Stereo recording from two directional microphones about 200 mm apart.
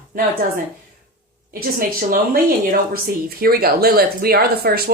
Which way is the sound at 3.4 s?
50° right (ahead or behind).